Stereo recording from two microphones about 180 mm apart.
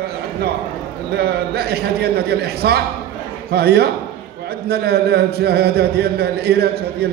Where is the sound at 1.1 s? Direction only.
60° right (ahead or behind).